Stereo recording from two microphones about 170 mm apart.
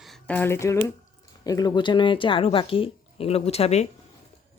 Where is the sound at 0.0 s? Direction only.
5° left (ahead or behind); by 3.8 s 40° left (ahead or behind).